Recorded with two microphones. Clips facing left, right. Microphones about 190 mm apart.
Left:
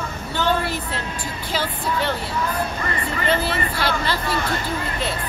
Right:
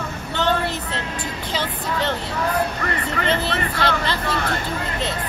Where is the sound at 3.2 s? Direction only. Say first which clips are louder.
Left 1 dB; 20° right (ahead or behind).